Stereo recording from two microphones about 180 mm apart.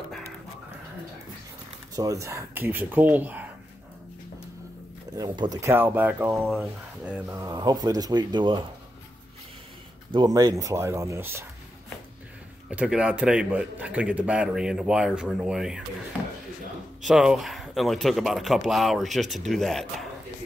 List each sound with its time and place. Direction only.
2.0 s speech: 20° right (ahead or behind)
5.1 s speech: 25° right (ahead or behind)
6.3 s speech: centre (ahead or behind); by 8.6 s 25° right (ahead or behind)
10.1 s speech: 20° right (ahead or behind)
12.6 s a man's voice: 5° right (ahead or behind)
17.0 s a man's voice: centre (ahead or behind)